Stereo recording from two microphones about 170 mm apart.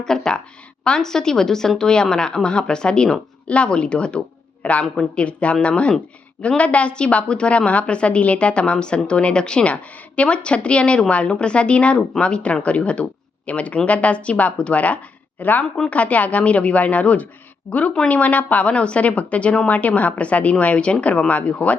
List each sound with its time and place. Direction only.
0.0 s a woman's voice: 5° left (ahead or behind)